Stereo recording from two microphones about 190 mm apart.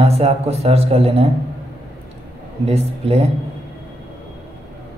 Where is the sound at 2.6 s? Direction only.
35° right (ahead or behind).